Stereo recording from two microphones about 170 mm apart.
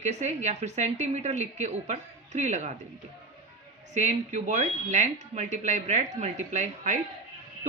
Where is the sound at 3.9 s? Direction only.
45° right (ahead or behind).